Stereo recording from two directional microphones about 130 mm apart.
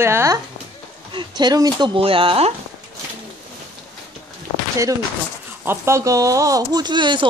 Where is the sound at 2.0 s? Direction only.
45° right (ahead or behind).